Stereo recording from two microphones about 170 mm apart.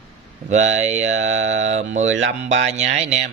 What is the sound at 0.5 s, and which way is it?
Speech, 40° right (ahead or behind).